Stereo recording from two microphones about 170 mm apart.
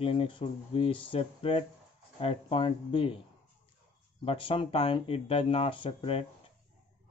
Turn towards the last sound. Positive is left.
turn(degrees=35)  # may be behind; listen again after turning